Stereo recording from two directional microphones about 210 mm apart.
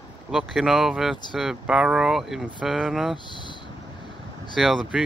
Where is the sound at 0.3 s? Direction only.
Centre (ahead or behind).